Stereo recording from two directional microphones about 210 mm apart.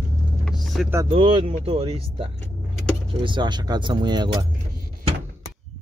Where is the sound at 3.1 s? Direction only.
25° right (ahead or behind).